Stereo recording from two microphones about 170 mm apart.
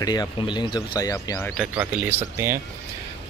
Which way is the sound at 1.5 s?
5° right (ahead or behind).